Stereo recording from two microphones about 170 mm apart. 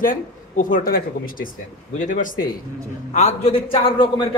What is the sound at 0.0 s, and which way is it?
Speech, 50° left (ahead or behind).